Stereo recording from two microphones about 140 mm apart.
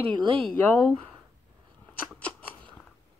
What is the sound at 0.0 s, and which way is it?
Speech, 40° right (ahead or behind).